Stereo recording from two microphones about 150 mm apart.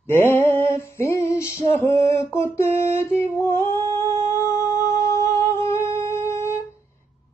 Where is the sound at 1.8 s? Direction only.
20° left (ahead or behind).